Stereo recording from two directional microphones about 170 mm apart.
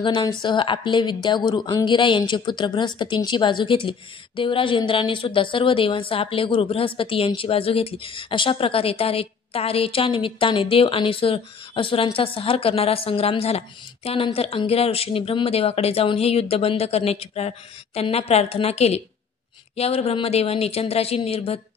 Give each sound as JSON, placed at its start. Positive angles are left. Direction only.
{"t": 0.0, "sound": "a woman's voice", "side_deg": 30}